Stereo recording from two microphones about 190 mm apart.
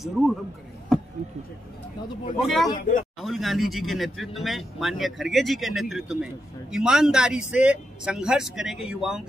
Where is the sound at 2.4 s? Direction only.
Centre (ahead or behind).